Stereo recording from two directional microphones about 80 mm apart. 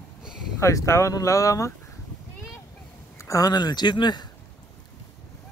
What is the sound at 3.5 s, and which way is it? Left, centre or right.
Speech, left.